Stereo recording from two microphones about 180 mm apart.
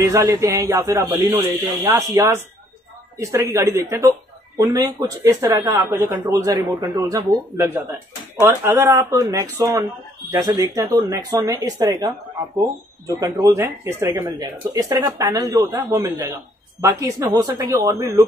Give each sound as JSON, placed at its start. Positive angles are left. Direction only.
{"t": 0.0, "sound": "speech", "side_deg": -20}